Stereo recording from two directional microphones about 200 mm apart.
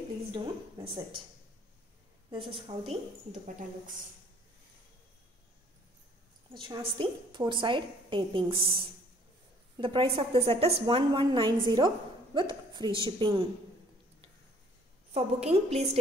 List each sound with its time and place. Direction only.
0.3 s a woman's voice: 25° right (ahead or behind)
2.3 s a woman's voice: 25° right (ahead or behind)
6.5 s a woman's voice: 25° right (ahead or behind)
9.8 s a woman's voice: 25° right (ahead or behind)
15.1 s a woman's voice: 30° right (ahead or behind)